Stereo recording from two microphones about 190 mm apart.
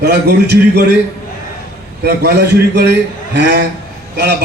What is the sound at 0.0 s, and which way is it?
Speech, 60° right (ahead or behind).